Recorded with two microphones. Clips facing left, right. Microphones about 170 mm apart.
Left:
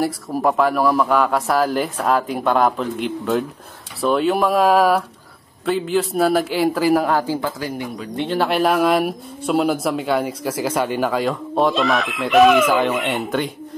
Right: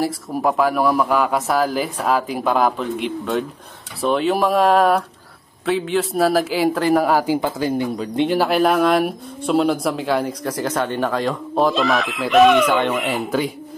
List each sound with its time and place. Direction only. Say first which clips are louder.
0.0 s speech: left 1 dB; centre (ahead or behind)
7.1 s speech: right 2 dB; 10° right (ahead or behind)
8.3 s speech: even; centre (ahead or behind)